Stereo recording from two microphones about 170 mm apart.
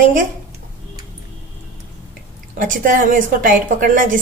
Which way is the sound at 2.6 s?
50° right (ahead or behind).